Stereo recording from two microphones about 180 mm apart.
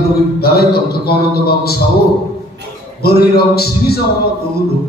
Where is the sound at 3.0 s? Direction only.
60° left (ahead or behind).